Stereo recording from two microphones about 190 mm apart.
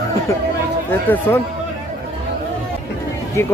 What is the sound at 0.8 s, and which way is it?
Speech, 10° left (ahead or behind).